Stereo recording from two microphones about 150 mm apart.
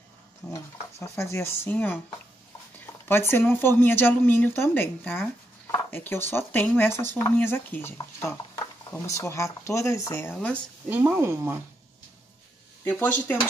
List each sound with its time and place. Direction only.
0.5 s a woman's voice: 20° left (ahead or behind)
3.1 s a woman's voice: 15° left (ahead or behind)
10.9 s speech: 15° right (ahead or behind)
12.8 s a woman's voice: 10° left (ahead or behind)